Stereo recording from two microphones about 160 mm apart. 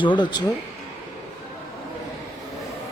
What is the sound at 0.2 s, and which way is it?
Speech, 30° left (ahead or behind).